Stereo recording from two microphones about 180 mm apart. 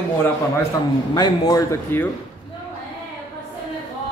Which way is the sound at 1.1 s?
20° left (ahead or behind).